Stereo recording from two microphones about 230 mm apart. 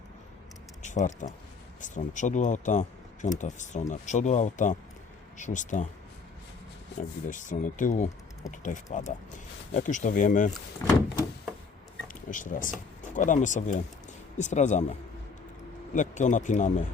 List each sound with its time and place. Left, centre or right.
0.8 s speech: left
7.3 s speech: left
10.8 s door: centre
12.0 s speech: left
15.9 s speech: left